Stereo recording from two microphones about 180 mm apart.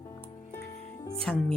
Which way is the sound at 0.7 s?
40° left (ahead or behind).